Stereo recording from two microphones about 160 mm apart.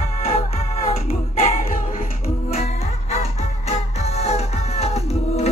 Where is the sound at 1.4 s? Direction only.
45° left (ahead or behind).